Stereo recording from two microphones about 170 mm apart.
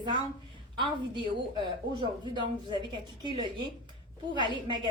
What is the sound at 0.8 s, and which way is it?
A woman's voice, 30° right (ahead or behind).